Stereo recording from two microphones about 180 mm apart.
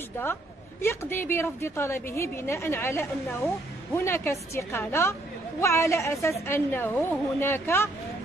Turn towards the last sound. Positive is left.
turn(degrees=15)  # may be behind; listen again after turning